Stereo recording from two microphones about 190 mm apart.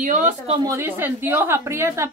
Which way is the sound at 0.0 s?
40° right (ahead or behind).